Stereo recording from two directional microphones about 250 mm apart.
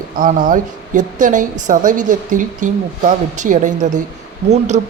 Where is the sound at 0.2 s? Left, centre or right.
Right.